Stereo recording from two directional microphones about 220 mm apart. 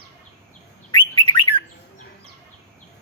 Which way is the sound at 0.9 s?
20° left (ahead or behind).